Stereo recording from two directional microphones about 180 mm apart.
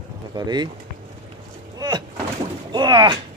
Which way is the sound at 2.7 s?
25° right (ahead or behind).